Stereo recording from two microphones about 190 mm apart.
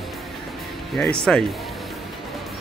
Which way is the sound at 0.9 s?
5° left (ahead or behind).